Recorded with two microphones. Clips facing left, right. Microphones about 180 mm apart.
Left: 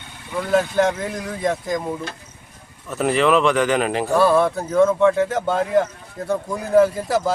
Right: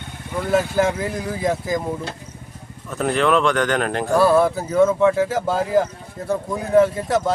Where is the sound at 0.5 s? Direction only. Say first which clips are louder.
Left 1 dB; 5° right (ahead or behind).